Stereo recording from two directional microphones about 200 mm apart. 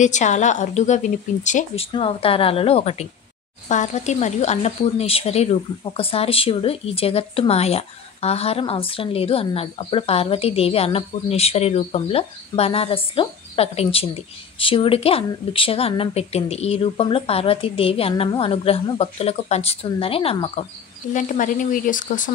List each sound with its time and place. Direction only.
0.0 s a woman's voice: 35° left (ahead or behind)
1.9 s speech: 25° left (ahead or behind)
21.1 s a woman's voice: 40° left (ahead or behind)